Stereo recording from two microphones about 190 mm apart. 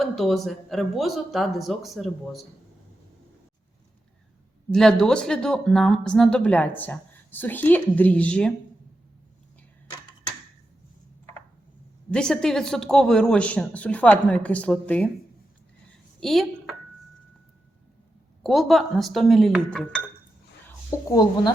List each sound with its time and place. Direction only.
0.0 s speech: centre (ahead or behind)
4.7 s speech: 5° left (ahead or behind)
12.1 s speech: 5° left (ahead or behind)
16.2 s a woman's voice: centre (ahead or behind)
18.4 s speech: centre (ahead or behind)
20.7 s a woman's voice: 20° left (ahead or behind)